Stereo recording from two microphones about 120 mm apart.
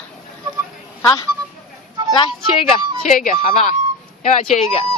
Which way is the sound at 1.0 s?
30° left (ahead or behind).